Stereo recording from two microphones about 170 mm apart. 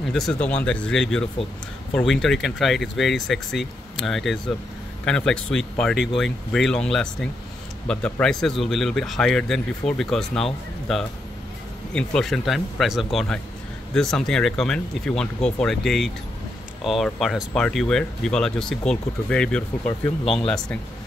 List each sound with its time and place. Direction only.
0.1 s speech: 5° left (ahead or behind)